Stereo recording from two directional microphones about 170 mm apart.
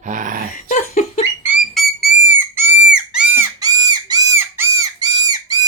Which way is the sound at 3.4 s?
20° right (ahead or behind).